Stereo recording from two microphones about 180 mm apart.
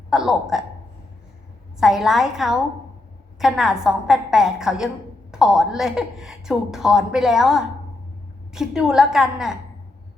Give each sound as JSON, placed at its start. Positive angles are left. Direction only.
{"t": 0.1, "sound": "a woman's voice", "side_deg": 0}
{"t": 1.8, "sound": "a woman's voice", "side_deg": 0}